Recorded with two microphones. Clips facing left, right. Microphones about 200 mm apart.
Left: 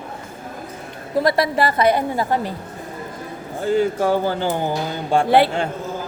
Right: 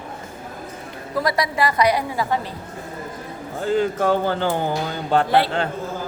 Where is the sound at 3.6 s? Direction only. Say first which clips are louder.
Left 1 dB; 10° left (ahead or behind).